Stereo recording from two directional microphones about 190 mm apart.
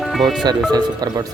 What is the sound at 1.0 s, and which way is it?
Speech, 20° right (ahead or behind).